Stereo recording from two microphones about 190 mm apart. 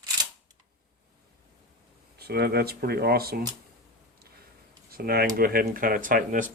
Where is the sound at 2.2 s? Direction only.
55° right (ahead or behind).